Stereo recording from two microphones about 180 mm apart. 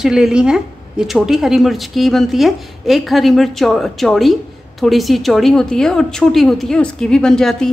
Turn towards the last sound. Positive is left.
turn(degrees=5)  # may be behind; listen again after turning